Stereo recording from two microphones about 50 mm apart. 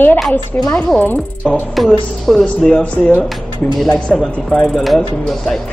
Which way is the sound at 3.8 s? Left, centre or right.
Left.